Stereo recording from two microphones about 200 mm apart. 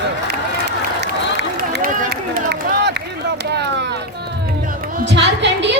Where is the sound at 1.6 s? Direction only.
50° right (ahead or behind).